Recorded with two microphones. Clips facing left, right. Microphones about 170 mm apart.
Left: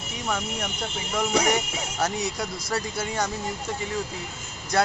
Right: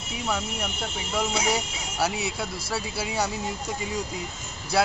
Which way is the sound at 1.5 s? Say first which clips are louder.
Left 2 dB; 5° right (ahead or behind).